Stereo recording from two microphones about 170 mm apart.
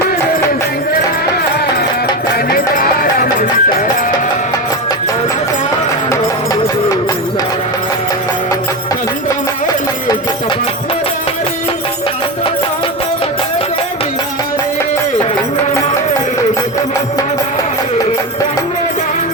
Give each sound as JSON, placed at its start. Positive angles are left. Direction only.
{"t": 2.5, "sound": "music", "side_deg": 60}